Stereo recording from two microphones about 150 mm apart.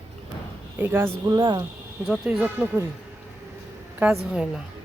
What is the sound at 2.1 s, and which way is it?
Speech, 10° right (ahead or behind).